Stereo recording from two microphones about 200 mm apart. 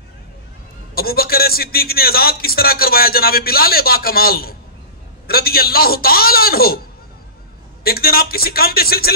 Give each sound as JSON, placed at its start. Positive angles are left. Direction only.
{"t": 0.9, "sound": "a man's voice", "side_deg": 50}
{"t": 7.8, "sound": "a man's voice", "side_deg": 50}